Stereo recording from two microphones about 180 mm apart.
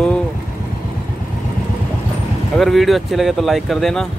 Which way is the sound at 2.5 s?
Centre (ahead or behind).